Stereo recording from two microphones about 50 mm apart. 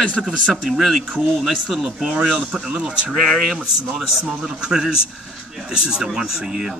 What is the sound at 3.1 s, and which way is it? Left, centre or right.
Speech, centre.